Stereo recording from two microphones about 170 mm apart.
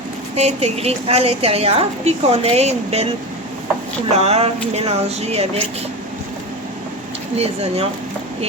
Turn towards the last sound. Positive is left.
turn(degrees=-35)  # may be behind; listen again after turning